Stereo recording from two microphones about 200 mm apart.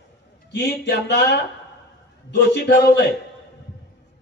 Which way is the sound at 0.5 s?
60° left (ahead or behind).